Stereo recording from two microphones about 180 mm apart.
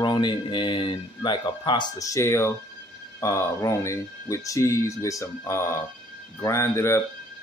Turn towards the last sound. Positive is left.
turn(degrees=15)  # may be behind; listen again after turning